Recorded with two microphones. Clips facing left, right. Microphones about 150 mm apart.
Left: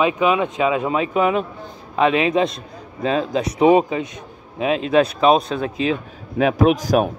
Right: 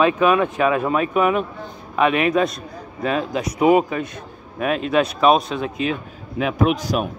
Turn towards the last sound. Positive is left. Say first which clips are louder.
# left 4 dB
turn(degrees=45)  # may be behind; listen again after turning